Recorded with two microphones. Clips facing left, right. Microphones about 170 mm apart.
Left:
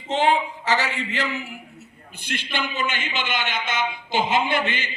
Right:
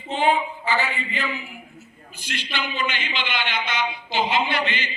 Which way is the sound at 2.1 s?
55° left (ahead or behind).